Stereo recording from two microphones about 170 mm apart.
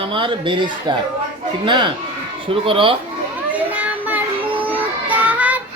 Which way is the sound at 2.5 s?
30° right (ahead or behind).